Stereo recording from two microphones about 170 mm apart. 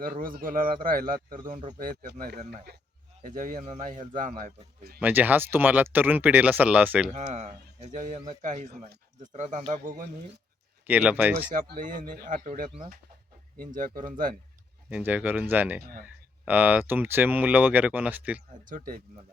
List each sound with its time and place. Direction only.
0.0 s speech: 55° right (ahead or behind)
3.2 s a man's voice: 50° right (ahead or behind)
4.9 s speech: 10° right (ahead or behind)
7.2 s a man's voice: 40° right (ahead or behind)
10.8 s speech: 10° right (ahead or behind)
11.5 s a man's voice: 50° right (ahead or behind)
13.7 s a man's voice: 55° right (ahead or behind)
14.8 s speech: 10° right (ahead or behind)
18.7 s a man's voice: 55° right (ahead or behind)